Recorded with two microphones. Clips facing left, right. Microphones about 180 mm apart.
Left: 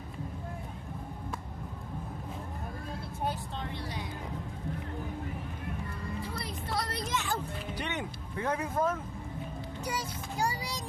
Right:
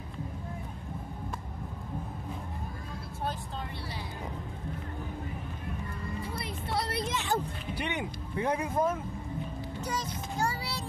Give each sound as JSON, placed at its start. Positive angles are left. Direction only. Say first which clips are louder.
{"t": 6.3, "sound": "music", "louder": "right 3 dB", "side_deg": -25}
{"t": 7.7, "sound": "speech", "louder": "right 4 dB", "side_deg": -10}
{"t": 9.8, "sound": "a child's voice", "louder": "right 1 dB", "side_deg": 10}